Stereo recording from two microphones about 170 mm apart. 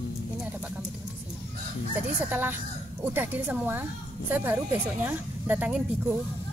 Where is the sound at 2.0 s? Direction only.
10° right (ahead or behind).